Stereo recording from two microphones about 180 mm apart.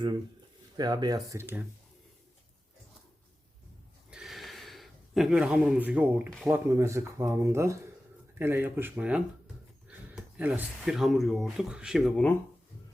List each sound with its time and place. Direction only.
0.8 s speech: 20° right (ahead or behind)
4.1 s a sound: centre (ahead or behind)
6.5 s speech: 15° right (ahead or behind); by 12.4 s 5° left (ahead or behind)